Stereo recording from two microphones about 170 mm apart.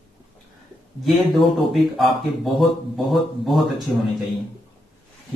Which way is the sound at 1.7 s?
Centre (ahead or behind).